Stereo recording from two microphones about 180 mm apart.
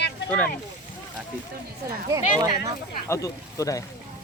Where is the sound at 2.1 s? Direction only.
20° right (ahead or behind).